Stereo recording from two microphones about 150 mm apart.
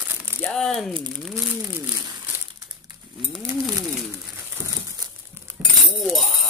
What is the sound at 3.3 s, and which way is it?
Pigeon, 25° right (ahead or behind).